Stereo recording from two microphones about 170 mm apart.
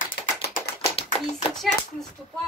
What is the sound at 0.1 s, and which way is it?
Typing, 55° left (ahead or behind).